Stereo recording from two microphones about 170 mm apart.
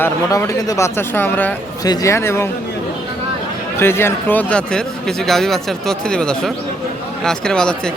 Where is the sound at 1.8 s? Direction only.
20° left (ahead or behind).